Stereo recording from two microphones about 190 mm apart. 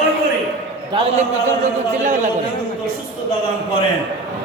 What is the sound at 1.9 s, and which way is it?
Speech, 40° right (ahead or behind).